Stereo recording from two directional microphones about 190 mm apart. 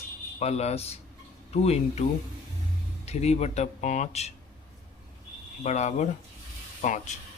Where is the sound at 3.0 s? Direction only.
35° left (ahead or behind).